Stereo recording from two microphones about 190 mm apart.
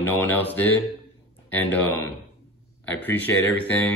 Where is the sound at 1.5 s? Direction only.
10° left (ahead or behind).